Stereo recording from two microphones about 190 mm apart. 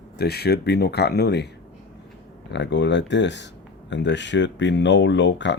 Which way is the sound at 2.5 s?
65° left (ahead or behind).